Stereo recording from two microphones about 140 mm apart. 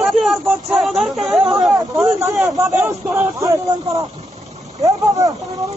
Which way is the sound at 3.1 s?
25° right (ahead or behind).